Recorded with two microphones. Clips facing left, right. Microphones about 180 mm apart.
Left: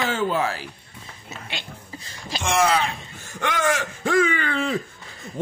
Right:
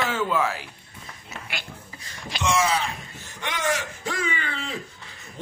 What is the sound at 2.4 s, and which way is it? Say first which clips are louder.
Speech: left 3 dB; 55° left (ahead or behind).